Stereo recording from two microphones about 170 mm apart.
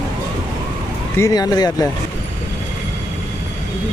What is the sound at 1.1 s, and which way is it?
Speech, 20° left (ahead or behind).